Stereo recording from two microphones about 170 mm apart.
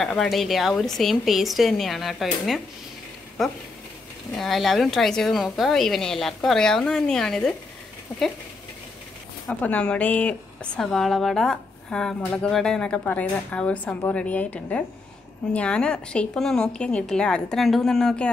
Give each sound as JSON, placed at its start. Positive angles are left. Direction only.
{"t": 0.0, "sound": "a woman's voice", "side_deg": 5}
{"t": 4.4, "sound": "a woman's voice", "side_deg": 0}
{"t": 9.5, "sound": "a woman's voice", "side_deg": 10}